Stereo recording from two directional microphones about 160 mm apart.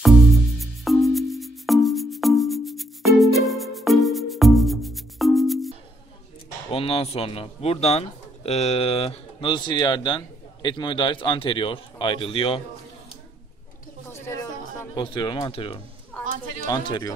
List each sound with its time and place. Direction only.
0.6 s music: centre (ahead or behind)
6.7 s speech: 35° left (ahead or behind)
14.0 s a sound: 15° left (ahead or behind)
15.0 s speech: 30° left (ahead or behind)
16.1 s a sound: 10° left (ahead or behind)
16.8 s speech: 25° left (ahead or behind)